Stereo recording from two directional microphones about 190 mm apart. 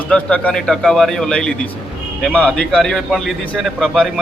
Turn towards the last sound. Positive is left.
turn(degrees=0)  # may be behind; listen again after turning